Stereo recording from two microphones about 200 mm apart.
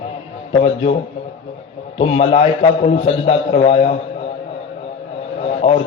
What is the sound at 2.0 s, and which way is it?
A man's voice, 30° left (ahead or behind).